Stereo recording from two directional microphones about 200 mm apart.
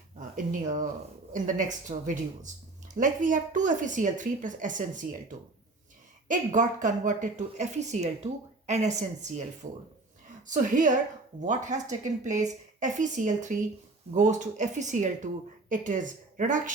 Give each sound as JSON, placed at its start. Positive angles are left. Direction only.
{"t": 0.2, "sound": "speech", "side_deg": -40}
{"t": 6.2, "sound": "speech", "side_deg": -40}